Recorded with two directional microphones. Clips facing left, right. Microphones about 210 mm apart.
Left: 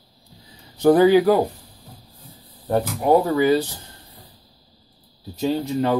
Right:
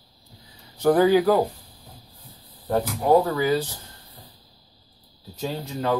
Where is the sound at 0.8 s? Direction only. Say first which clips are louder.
Left 4 dB; 20° left (ahead or behind).